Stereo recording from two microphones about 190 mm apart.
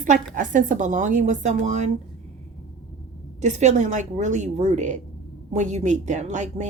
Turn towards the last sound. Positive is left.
turn(degrees=-40)  # may be behind; listen again after turning